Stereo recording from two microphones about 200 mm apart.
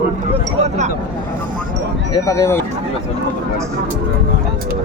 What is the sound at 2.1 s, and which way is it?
Speech, 15° left (ahead or behind).